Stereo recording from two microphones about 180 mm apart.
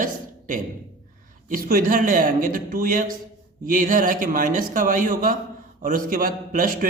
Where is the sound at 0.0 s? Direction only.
50° right (ahead or behind).